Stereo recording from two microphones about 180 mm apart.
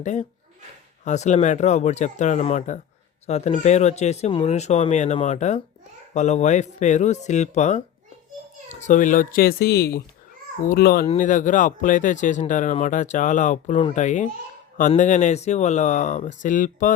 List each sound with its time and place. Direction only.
0.0 s speech: 40° left (ahead or behind)